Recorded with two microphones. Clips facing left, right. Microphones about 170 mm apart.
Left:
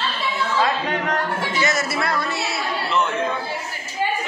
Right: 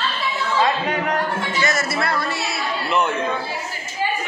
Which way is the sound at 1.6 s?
20° left (ahead or behind).